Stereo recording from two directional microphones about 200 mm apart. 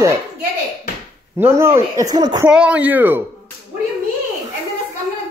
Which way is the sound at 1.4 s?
10° right (ahead or behind).